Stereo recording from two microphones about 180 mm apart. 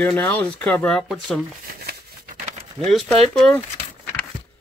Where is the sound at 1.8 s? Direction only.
45° right (ahead or behind).